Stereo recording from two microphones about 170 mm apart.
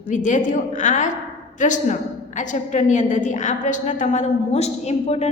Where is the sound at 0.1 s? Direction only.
45° left (ahead or behind).